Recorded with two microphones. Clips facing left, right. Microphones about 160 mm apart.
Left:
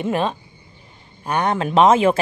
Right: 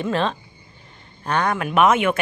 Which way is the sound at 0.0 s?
15° left (ahead or behind).